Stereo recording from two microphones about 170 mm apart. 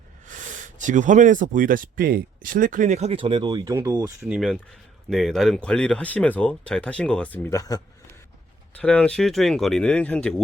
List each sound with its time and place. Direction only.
0.3 s speech: 50° right (ahead or behind); by 4.0 s 15° right (ahead or behind)
4.2 s speech: centre (ahead or behind); by 7.8 s 20° left (ahead or behind)
8.7 s speech: 10° left (ahead or behind)